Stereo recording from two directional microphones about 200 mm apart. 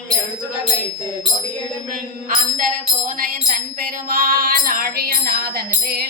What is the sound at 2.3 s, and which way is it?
Music, 40° right (ahead or behind).